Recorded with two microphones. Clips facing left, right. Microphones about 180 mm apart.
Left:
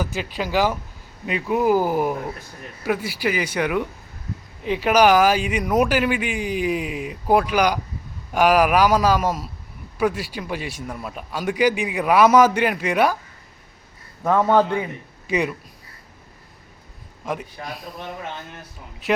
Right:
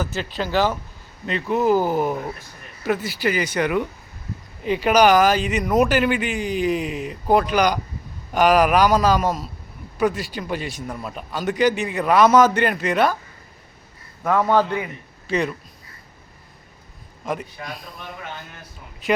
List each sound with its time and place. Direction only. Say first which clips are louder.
0.0 s a man's voice: even; 10° left (ahead or behind)
14.3 s speech: left 1 dB; 10° left (ahead or behind)
14.6 s a man's voice: left 2 dB; 25° left (ahead or behind)
15.3 s speech: even; 10° left (ahead or behind)